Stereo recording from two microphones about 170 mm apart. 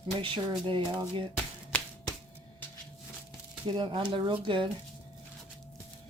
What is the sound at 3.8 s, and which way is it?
Speech, 30° right (ahead or behind).